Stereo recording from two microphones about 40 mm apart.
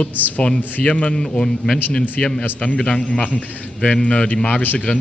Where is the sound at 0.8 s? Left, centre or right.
Left.